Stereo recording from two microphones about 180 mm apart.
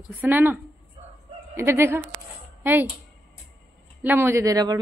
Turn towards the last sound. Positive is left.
turn(degrees=-20)  # may be behind; listen again after turning